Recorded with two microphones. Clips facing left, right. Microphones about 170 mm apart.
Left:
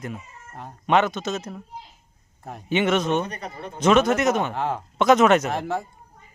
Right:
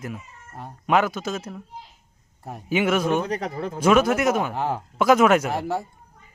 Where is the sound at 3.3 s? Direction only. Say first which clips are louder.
Right 7 dB; 90° right.